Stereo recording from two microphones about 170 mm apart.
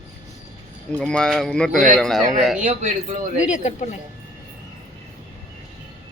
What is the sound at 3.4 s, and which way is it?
Speech, 45° left (ahead or behind).